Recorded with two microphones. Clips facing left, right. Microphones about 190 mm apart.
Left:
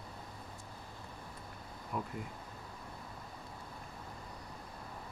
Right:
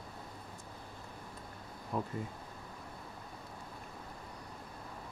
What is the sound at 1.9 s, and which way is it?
Speech, 25° right (ahead or behind).